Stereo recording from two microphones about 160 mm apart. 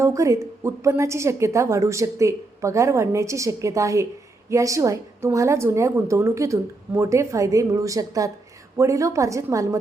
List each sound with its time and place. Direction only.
0.0 s a woman's voice: 20° right (ahead or behind)